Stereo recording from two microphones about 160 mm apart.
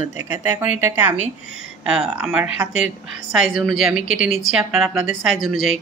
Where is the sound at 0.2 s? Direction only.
15° right (ahead or behind).